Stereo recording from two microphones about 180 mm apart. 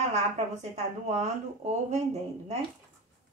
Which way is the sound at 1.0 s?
40° right (ahead or behind).